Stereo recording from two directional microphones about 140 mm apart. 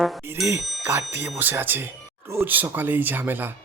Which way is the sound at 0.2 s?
15° right (ahead or behind).